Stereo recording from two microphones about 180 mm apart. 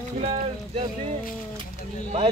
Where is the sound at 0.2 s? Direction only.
35° right (ahead or behind).